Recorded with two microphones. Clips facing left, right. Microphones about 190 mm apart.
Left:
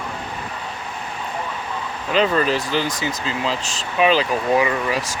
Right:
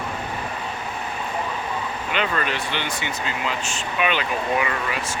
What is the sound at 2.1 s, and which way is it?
Speech, 35° left (ahead or behind).